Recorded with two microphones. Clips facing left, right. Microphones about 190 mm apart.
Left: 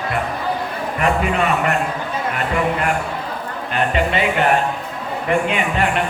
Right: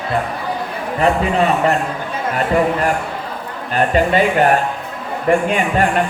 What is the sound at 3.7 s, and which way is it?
Speech, 40° right (ahead or behind).